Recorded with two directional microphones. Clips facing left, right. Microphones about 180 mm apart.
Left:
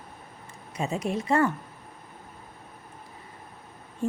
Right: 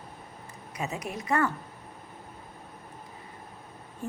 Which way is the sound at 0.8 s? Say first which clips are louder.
Left 6 dB; 25° left (ahead or behind).